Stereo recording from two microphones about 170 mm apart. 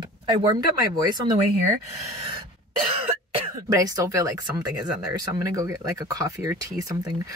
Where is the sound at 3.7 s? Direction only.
20° right (ahead or behind).